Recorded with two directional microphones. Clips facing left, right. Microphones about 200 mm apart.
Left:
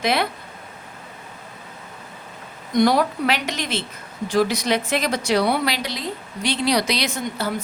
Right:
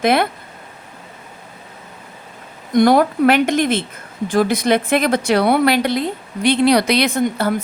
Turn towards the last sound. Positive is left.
turn(degrees=-55)  # may be behind; listen again after turning